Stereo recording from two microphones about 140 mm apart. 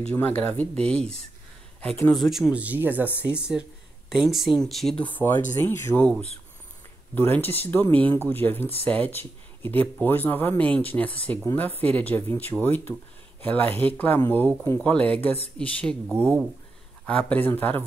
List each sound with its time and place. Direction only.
0.1 s speech: 15° left (ahead or behind)
2.1 s speech: centre (ahead or behind); by 6.0 s 15° left (ahead or behind)
7.2 s speech: 15° left (ahead or behind)
16.1 s speech: 15° right (ahead or behind)
17.0 s speech: 10° left (ahead or behind)